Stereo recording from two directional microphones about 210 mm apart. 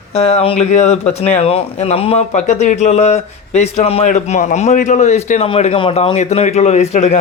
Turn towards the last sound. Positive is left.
turn(degrees=35)  # may be behind; listen again after turning